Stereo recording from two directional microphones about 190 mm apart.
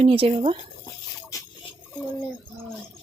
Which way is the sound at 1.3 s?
20° left (ahead or behind).